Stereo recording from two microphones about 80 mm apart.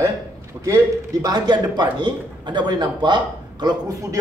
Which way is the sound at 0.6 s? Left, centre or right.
Right.